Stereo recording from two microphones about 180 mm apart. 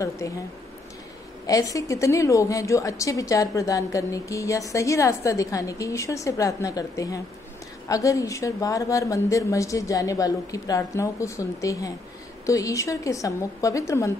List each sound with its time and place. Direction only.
0.2 s a woman's voice: 15° left (ahead or behind)
1.5 s a woman's voice: 20° left (ahead or behind)